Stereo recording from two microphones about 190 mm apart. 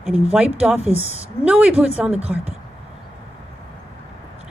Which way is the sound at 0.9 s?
35° left (ahead or behind).